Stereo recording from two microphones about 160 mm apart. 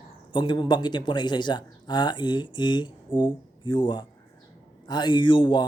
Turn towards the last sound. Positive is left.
turn(degrees=30)  # may be behind; listen again after turning